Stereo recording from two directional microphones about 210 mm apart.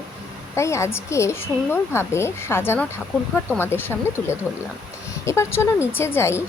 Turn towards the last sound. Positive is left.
turn(degrees=10)  # may be behind; listen again after turning